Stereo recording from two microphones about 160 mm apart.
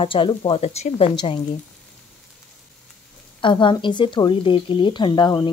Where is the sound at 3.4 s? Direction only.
30° left (ahead or behind).